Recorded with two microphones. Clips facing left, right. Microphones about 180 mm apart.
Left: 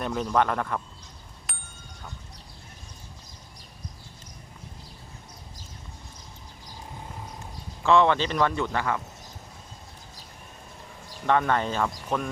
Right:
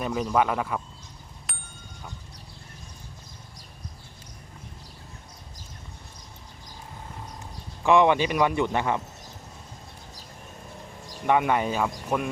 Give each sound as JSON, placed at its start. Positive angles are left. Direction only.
{"t": 0.0, "sound": "speech", "side_deg": -5}
{"t": 1.5, "sound": "a sound", "side_deg": 0}
{"t": 7.9, "sound": "speech", "side_deg": -15}
{"t": 11.3, "sound": "speech", "side_deg": -10}